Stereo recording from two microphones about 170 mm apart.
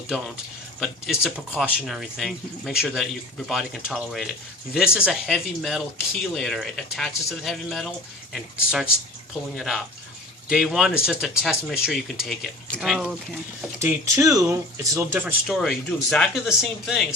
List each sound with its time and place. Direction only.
0.8 s speech: centre (ahead or behind)
13.7 s speech: 20° right (ahead or behind)
15.4 s speech: centre (ahead or behind)